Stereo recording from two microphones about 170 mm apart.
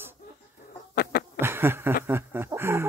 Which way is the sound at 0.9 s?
65° left (ahead or behind).